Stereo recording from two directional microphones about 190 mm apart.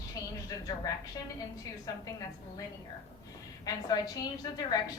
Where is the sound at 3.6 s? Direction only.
20° left (ahead or behind).